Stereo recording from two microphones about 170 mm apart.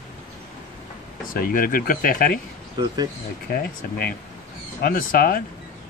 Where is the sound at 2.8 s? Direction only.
25° right (ahead or behind).